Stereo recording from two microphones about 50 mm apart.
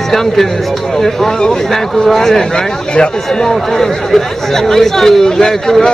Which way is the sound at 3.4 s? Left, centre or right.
Centre.